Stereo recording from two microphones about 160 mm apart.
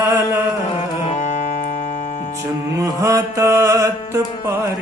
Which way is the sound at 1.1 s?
50° left (ahead or behind).